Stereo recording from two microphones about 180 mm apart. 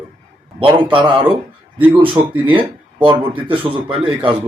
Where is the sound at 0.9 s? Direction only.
25° right (ahead or behind).